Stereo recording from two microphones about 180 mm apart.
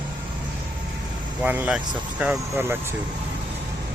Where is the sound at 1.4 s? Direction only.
10° right (ahead or behind).